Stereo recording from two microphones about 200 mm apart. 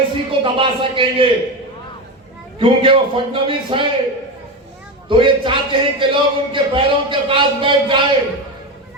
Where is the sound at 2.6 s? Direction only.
25° right (ahead or behind).